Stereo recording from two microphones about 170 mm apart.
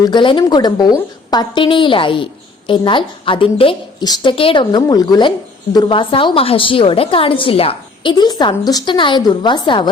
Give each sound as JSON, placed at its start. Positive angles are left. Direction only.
{"t": 0.0, "sound": "a woman's voice", "side_deg": 25}